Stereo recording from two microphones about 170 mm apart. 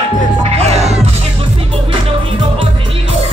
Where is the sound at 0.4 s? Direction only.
40° right (ahead or behind).